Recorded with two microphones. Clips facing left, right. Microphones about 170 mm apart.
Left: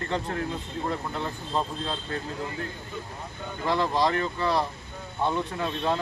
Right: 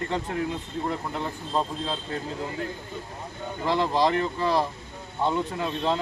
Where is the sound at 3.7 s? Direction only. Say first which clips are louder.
Right 1 dB; 15° right (ahead or behind).